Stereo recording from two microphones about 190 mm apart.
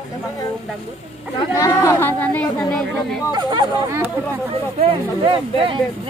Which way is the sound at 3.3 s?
25° right (ahead or behind).